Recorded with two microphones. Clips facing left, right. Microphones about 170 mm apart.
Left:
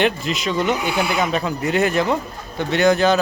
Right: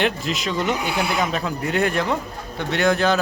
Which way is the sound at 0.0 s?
Centre (ahead or behind).